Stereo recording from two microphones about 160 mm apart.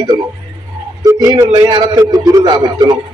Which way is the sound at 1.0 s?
25° right (ahead or behind).